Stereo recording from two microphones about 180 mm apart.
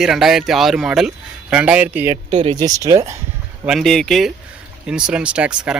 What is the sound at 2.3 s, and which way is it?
Speech, 30° right (ahead or behind).